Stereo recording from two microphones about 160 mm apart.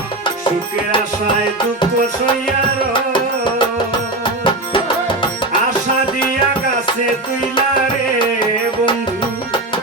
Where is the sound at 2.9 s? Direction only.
30° left (ahead or behind).